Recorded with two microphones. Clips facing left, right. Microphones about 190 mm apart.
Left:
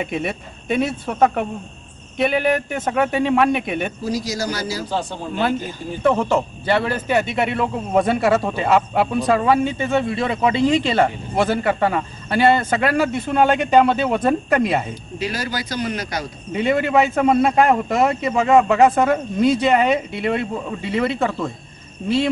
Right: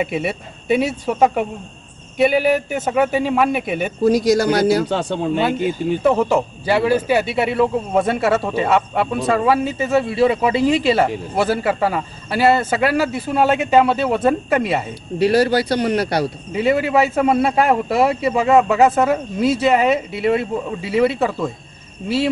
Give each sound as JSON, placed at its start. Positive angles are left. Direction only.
{"t": 0.0, "sound": "speech", "side_deg": -5}
{"t": 4.0, "sound": "speech", "side_deg": -60}
{"t": 6.0, "sound": "speech", "side_deg": -5}
{"t": 15.1, "sound": "speech", "side_deg": -60}
{"t": 16.5, "sound": "speech", "side_deg": -5}